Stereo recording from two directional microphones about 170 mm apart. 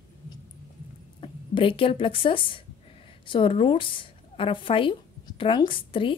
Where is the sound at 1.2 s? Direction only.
30° left (ahead or behind).